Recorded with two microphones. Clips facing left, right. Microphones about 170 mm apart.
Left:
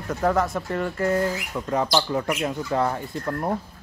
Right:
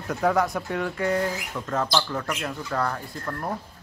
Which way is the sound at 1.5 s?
15° left (ahead or behind).